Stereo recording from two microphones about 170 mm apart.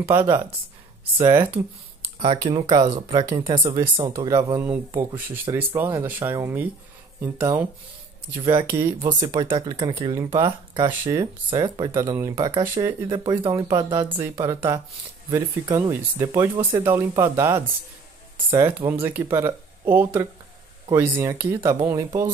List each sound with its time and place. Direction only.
0.2 s speech: 25° right (ahead or behind)
2.1 s speech: 30° right (ahead or behind); by 7.6 s 15° right (ahead or behind)
8.4 s speech: 30° right (ahead or behind)
8.6 s speech: 15° right (ahead or behind)
9.0 s speech: 30° right (ahead or behind)